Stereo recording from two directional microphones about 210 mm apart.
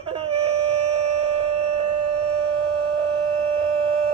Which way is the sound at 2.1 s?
90° right.